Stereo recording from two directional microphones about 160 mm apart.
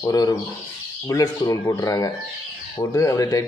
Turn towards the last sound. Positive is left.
turn(degrees=20)  # may be behind; listen again after turning